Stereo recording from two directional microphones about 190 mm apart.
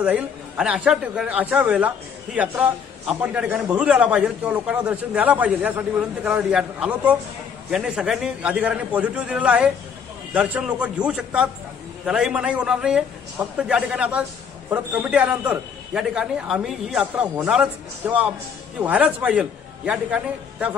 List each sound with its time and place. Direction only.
0.0 s a man's voice: 5° right (ahead or behind)